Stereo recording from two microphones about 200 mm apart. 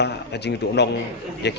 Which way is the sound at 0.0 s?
55° left (ahead or behind).